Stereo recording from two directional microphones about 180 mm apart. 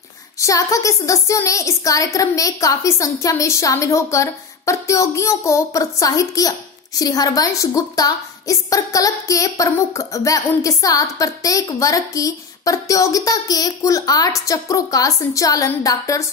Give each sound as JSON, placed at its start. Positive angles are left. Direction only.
{"t": 0.4, "sound": "a woman's voice", "side_deg": 20}